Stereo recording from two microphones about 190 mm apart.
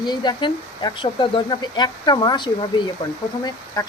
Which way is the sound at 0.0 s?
25° left (ahead or behind).